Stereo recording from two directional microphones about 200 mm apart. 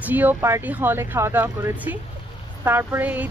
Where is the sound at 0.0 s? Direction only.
10° right (ahead or behind).